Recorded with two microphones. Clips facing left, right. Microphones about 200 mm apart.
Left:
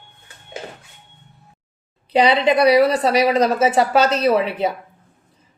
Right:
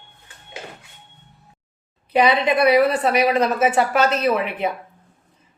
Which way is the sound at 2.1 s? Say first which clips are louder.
Left 2 dB; 30° left (ahead or behind).